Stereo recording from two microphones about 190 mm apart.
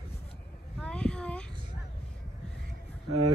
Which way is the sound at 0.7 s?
5° left (ahead or behind).